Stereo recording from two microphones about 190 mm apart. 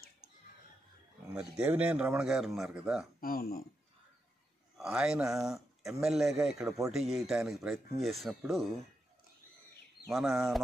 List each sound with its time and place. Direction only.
1.6 s speech: 5° right (ahead or behind)
3.2 s speech: 50° left (ahead or behind)
4.7 s speech: 5° right (ahead or behind)
10.0 s speech: centre (ahead or behind)